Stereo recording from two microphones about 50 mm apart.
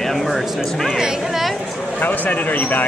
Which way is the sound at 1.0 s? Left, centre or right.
Centre.